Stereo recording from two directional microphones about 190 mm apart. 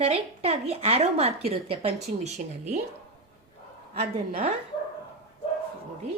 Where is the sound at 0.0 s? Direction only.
30° right (ahead or behind).